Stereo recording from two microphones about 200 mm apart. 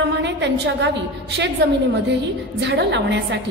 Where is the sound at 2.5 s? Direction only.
60° right (ahead or behind).